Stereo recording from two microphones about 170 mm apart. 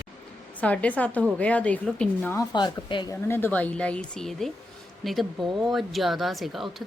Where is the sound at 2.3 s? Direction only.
25° left (ahead or behind).